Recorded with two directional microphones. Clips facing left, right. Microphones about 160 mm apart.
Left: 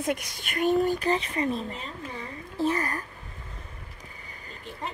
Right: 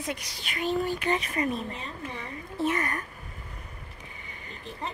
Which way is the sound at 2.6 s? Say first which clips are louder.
Left 1 dB; 30° left (ahead or behind).